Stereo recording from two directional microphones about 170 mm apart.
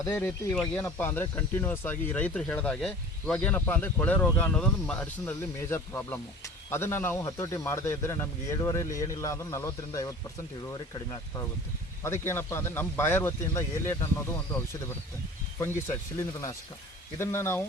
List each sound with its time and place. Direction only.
0.0 s speech: 15° left (ahead or behind)
0.5 s speech: 5° left (ahead or behind)
0.8 s speech: 15° left (ahead or behind)
15.5 s speech: 15° left (ahead or behind)